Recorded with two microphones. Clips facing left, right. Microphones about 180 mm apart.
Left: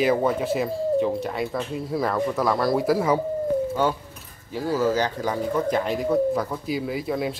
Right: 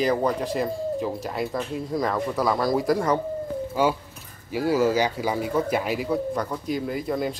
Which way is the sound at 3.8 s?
10° right (ahead or behind).